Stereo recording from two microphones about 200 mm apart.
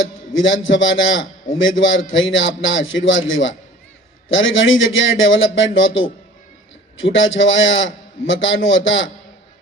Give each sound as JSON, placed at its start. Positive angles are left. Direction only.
{"t": 0.3, "sound": "a man's voice", "side_deg": 70}